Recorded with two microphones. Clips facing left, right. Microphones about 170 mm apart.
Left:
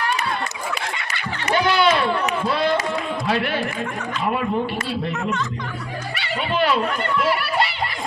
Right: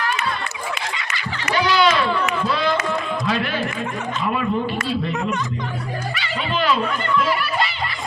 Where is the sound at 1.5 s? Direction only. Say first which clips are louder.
Even; 55° left (ahead or behind).